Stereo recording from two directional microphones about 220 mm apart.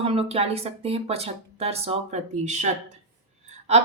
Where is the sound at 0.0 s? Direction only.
25° right (ahead or behind).